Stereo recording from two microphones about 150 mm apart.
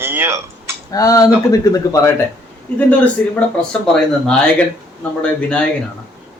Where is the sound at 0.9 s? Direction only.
25° left (ahead or behind).